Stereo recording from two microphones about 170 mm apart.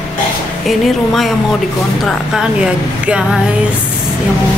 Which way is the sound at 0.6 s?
Centre (ahead or behind).